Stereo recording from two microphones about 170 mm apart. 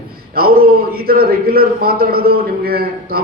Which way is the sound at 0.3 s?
60° right (ahead or behind).